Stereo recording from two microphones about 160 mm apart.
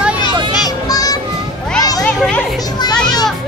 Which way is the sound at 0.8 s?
25° left (ahead or behind).